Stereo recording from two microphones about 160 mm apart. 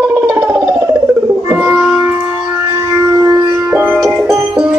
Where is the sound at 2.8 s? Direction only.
20° right (ahead or behind).